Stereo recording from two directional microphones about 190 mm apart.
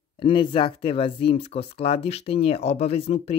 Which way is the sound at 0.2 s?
25° left (ahead or behind).